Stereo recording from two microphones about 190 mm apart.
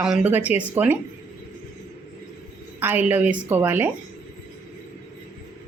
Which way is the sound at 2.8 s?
10° right (ahead or behind).